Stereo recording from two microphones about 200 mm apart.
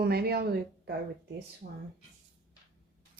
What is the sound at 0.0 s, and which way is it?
Speech, 50° right (ahead or behind).